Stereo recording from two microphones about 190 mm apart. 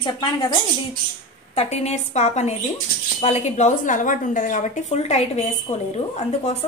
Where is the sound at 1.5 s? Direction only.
35° left (ahead or behind).